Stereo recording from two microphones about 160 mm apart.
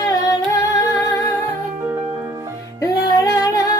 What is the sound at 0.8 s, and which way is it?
Music, 20° left (ahead or behind).